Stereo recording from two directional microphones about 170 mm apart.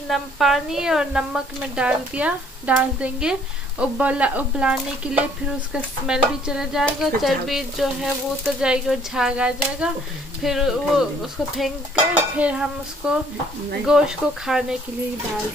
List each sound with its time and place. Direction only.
0.1 s a woman's voice: centre (ahead or behind)